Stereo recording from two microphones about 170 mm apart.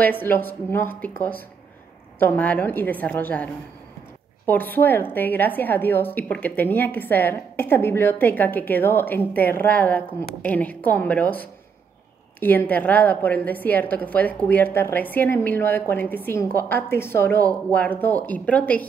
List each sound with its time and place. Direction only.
0.0 s a woman's voice: 10° left (ahead or behind)
4.7 s a woman's voice: 10° left (ahead or behind)
17.4 s speech: 20° right (ahead or behind)
17.7 s a woman's voice: 10° left (ahead or behind)